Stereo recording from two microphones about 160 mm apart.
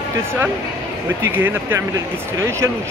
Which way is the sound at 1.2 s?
15° right (ahead or behind).